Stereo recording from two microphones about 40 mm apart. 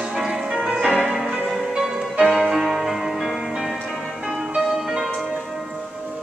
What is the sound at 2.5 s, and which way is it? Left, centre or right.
Music, centre.